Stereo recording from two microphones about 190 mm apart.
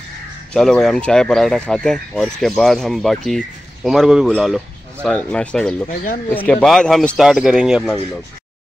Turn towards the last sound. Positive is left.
turn(degrees=-5)  # may be behind; listen again after turning